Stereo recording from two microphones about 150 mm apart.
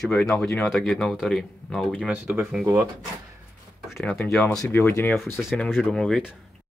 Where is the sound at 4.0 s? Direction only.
5° left (ahead or behind).